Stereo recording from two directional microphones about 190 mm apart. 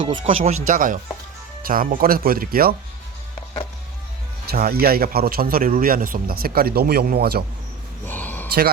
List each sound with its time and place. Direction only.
0.2 s speech: 40° right (ahead or behind)
4.4 s speech: 55° right (ahead or behind)
8.0 s a sound: 10° left (ahead or behind)